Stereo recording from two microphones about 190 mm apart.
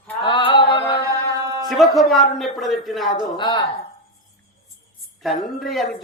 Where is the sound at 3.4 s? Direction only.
25° left (ahead or behind).